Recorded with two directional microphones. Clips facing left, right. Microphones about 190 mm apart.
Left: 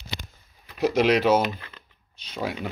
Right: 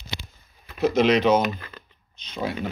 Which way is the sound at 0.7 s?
10° left (ahead or behind).